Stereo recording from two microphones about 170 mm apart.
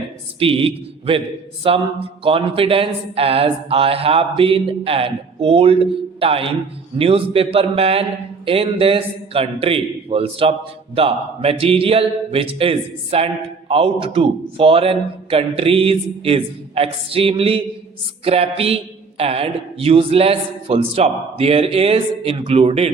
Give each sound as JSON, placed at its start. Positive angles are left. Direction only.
{"t": 0.3, "sound": "speech", "side_deg": -35}